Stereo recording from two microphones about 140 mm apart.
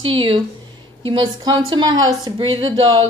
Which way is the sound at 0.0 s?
40° right (ahead or behind).